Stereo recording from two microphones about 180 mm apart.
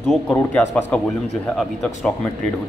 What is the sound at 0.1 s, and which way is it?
Speech, 10° left (ahead or behind).